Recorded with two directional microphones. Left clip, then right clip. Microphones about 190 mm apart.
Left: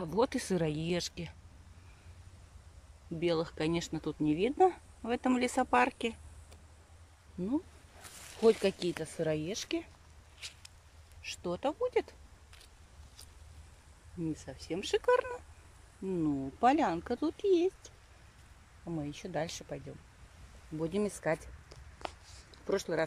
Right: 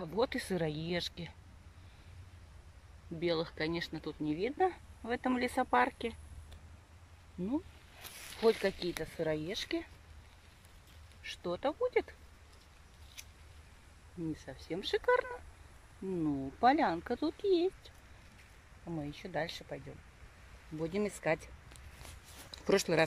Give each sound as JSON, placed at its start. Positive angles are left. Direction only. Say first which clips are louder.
{"t": 0.0, "sound": "speech", "louder": "left 3 dB", "side_deg": 10}
{"t": 3.2, "sound": "speech", "louder": "left 2 dB", "side_deg": 5}
{"t": 8.4, "sound": "speech", "louder": "left 3 dB", "side_deg": 10}
{"t": 11.2, "sound": "speech", "louder": "left 1 dB", "side_deg": 5}
{"t": 14.3, "sound": "speech", "louder": "left 2 dB", "side_deg": 5}
{"t": 20.8, "sound": "speech", "louder": "left 1 dB", "side_deg": 5}
{"t": 22.5, "sound": "speech", "louder": "right 3 dB", "side_deg": 0}